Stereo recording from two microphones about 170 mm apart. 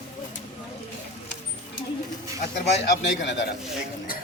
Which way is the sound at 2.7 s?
90° left.